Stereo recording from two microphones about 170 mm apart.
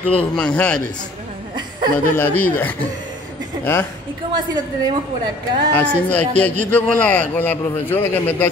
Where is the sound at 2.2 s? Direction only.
10° left (ahead or behind).